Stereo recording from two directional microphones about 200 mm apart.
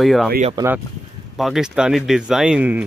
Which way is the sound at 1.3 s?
Centre (ahead or behind).